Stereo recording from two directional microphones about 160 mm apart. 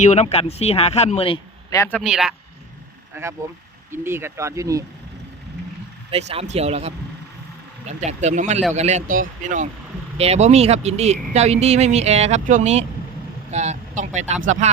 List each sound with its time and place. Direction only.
0.0 s speech: 45° left (ahead or behind)
1.7 s a man's voice: 20° left (ahead or behind)
2.0 s speech: centre (ahead or behind)
3.1 s speech: 15° right (ahead or behind)
6.1 s speech: 40° right (ahead or behind)
10.2 s speech: 40° right (ahead or behind)